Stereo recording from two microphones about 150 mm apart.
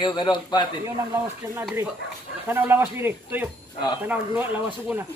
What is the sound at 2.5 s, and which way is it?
Speech, 15° right (ahead or behind).